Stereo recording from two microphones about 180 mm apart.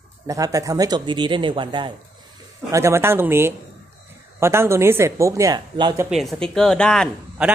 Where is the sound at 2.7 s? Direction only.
15° right (ahead or behind).